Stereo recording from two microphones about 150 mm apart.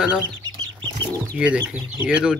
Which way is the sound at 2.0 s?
5° right (ahead or behind).